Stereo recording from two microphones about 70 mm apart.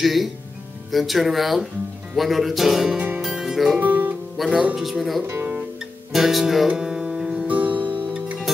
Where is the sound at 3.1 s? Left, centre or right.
Centre.